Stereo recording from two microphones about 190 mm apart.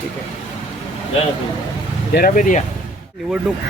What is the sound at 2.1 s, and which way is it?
Speech, 45° left (ahead or behind).